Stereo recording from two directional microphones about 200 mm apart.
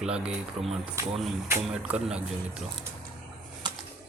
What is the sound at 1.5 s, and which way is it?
Speech, 5° right (ahead or behind).